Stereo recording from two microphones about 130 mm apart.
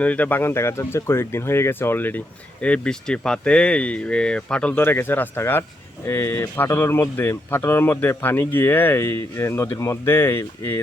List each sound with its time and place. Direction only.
0.0 s speech: 10° left (ahead or behind)